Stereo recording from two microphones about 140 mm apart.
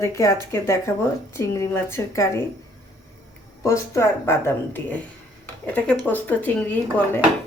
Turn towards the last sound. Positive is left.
turn(degrees=10)  # may be behind; listen again after turning